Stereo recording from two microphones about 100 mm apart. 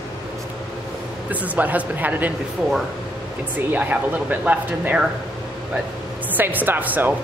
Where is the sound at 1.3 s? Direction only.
15° right (ahead or behind).